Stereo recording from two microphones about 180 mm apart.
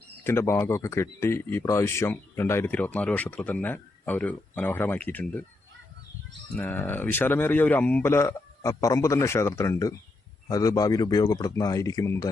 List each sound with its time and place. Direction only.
0.3 s speech: 15° left (ahead or behind)
6.6 s a man's voice: 10° left (ahead or behind)